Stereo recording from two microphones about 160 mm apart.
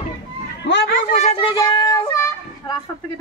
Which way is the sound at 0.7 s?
90° left.